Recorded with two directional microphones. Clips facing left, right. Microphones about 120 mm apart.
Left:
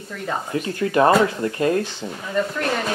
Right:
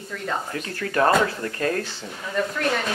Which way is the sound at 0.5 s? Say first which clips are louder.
Left 6 dB; 20° left (ahead or behind).